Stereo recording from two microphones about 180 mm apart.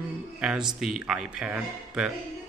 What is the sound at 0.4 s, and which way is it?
Speech, 5° right (ahead or behind).